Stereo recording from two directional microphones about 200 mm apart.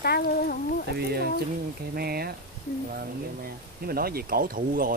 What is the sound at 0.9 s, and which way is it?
Speech, 50° right (ahead or behind).